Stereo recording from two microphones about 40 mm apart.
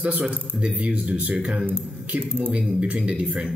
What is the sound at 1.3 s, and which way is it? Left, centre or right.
Speech, right.